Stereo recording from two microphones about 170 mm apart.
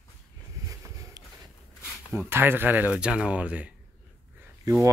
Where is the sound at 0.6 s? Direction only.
20° right (ahead or behind).